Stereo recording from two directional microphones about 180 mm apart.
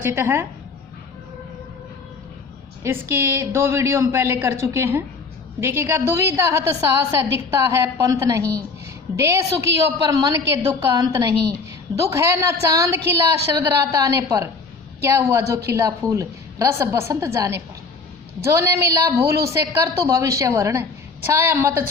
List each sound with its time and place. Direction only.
0.0 s a woman's voice: 15° right (ahead or behind)
2.8 s a woman's voice: 15° right (ahead or behind)